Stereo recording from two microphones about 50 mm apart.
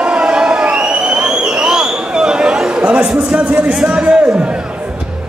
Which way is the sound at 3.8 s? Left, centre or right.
Right.